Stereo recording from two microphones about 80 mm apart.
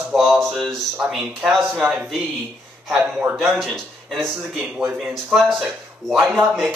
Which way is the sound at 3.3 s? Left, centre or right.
Centre.